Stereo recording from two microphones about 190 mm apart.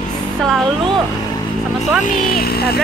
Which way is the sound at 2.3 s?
55° left (ahead or behind).